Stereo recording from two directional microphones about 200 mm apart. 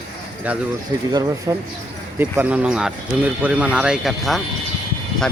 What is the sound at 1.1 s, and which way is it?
Speech, 20° right (ahead or behind).